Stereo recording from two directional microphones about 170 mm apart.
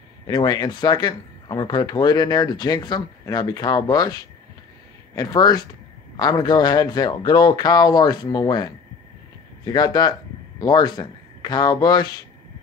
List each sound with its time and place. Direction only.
0.3 s speech: 25° left (ahead or behind)
9.7 s a man's voice: 25° left (ahead or behind)